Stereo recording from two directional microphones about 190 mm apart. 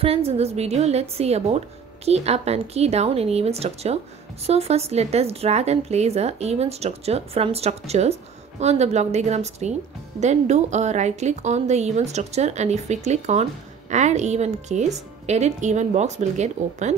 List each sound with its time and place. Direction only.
0.0 s speech: 30° right (ahead or behind)